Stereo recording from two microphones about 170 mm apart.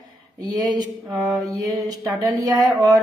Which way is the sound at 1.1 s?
Centre (ahead or behind).